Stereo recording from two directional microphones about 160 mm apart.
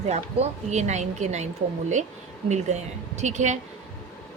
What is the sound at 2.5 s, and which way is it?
Speech, 45° right (ahead or behind).